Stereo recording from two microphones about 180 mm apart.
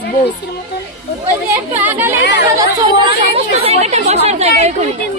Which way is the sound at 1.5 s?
10° right (ahead or behind).